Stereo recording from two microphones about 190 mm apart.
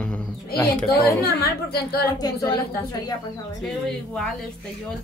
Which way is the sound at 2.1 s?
20° left (ahead or behind).